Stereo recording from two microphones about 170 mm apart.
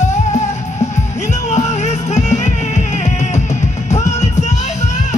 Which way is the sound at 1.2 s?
40° left (ahead or behind).